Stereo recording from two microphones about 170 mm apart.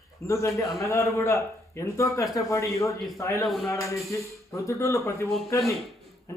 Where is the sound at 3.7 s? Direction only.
15° left (ahead or behind).